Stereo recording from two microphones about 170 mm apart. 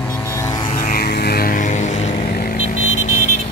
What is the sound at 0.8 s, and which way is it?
Vehicle, 60° left (ahead or behind).